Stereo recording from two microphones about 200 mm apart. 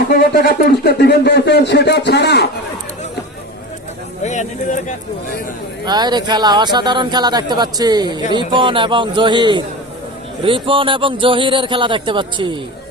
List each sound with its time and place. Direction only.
0.3 s speech: 50° left (ahead or behind)
4.2 s speech: 35° left (ahead or behind)
5.8 s speech: 20° right (ahead or behind)